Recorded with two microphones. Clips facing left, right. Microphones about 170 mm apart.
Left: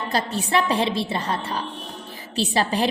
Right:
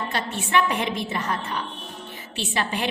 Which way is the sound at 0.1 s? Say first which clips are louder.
Left 3 dB; 35° left (ahead or behind).